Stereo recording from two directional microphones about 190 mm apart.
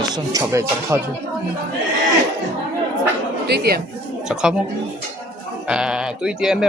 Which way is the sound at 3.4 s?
55° right (ahead or behind).